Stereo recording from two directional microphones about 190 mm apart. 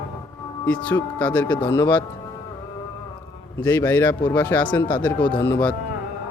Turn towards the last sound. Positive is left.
turn(degrees=15)  # may be behind; listen again after turning